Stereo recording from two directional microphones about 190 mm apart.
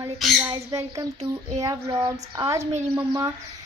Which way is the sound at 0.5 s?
15° right (ahead or behind).